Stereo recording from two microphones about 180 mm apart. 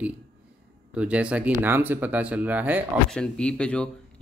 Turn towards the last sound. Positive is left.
turn(degrees=5)  # may be behind; listen again after turning